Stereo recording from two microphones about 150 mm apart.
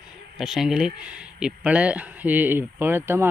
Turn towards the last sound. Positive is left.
turn(degrees=-15)  # may be behind; listen again after turning